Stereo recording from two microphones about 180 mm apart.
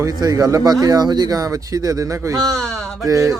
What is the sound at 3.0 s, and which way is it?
Speech, 20° right (ahead or behind).